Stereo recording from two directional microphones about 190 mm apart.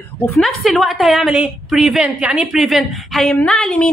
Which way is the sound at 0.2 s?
5° left (ahead or behind).